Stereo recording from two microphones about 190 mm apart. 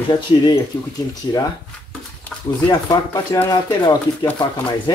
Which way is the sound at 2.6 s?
20° left (ahead or behind).